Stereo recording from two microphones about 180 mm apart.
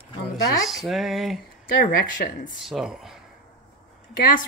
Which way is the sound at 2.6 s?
Centre (ahead or behind).